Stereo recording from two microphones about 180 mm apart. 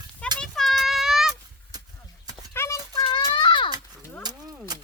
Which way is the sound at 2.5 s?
15° left (ahead or behind).